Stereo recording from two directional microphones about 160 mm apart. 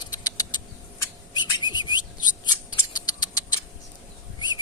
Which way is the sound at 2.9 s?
25° left (ahead or behind).